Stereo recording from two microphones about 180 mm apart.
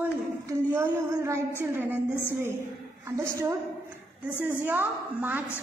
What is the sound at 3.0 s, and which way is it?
Child singing, 15° right (ahead or behind).